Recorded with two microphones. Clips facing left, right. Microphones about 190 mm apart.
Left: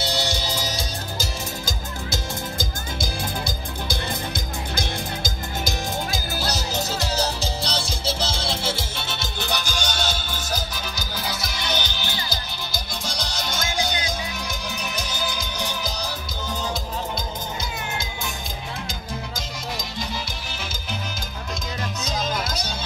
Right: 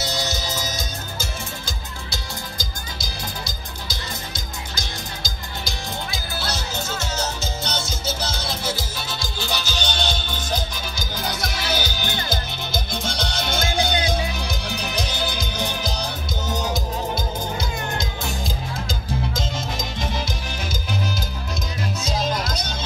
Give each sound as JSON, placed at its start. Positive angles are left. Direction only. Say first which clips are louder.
{"t": 0.0, "sound": "music", "louder": "left 1 dB", "side_deg": 30}
{"t": 3.0, "sound": "music", "louder": "left 5 dB", "side_deg": 55}
{"t": 11.8, "sound": "music", "louder": "right 4 dB", "side_deg": -10}
{"t": 12.1, "sound": "music", "louder": "right 4 dB", "side_deg": -55}
{"t": 13.5, "sound": "music", "louder": "right 4 dB", "side_deg": -30}